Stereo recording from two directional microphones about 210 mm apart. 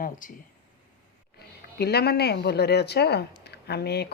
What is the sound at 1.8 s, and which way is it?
Speech, 50° left (ahead or behind).